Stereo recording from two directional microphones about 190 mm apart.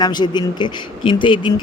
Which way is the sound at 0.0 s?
20° left (ahead or behind).